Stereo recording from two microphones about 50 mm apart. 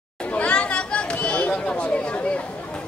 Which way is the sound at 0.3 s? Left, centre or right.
Left.